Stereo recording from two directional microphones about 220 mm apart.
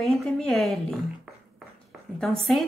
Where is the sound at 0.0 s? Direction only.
Centre (ahead or behind).